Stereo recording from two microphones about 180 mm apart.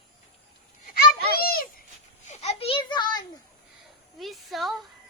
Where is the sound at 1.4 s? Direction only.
55° left (ahead or behind).